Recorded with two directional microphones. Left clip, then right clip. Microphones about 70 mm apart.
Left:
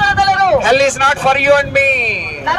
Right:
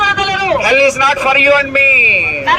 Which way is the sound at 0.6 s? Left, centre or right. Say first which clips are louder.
Right 1 dB; left.